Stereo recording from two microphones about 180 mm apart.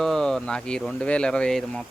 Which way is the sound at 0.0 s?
5° left (ahead or behind).